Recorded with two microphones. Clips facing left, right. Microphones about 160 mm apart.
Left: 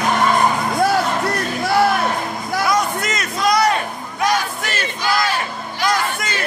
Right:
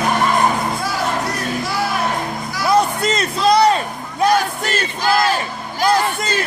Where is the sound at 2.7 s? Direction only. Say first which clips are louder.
Right 8 dB; 30° right (ahead or behind).